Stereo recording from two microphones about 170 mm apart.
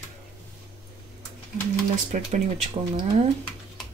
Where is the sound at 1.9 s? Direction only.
45° right (ahead or behind).